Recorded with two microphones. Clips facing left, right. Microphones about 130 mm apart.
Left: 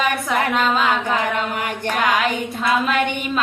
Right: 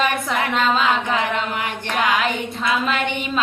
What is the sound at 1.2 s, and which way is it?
Chant, 45° left (ahead or behind).